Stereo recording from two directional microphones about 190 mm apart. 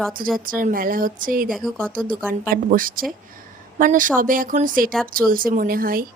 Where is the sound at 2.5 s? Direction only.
50° right (ahead or behind).